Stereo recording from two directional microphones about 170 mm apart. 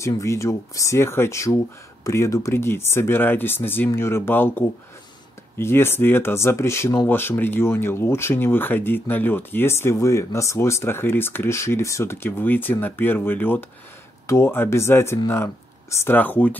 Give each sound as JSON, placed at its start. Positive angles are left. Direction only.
{"t": 0.0, "sound": "speech", "side_deg": 15}